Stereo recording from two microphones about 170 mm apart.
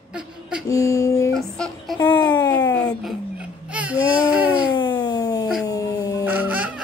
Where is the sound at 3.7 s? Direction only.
10° right (ahead or behind).